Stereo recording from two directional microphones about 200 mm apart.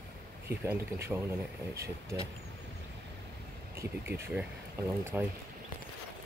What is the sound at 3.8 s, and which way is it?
Speech, 10° right (ahead or behind).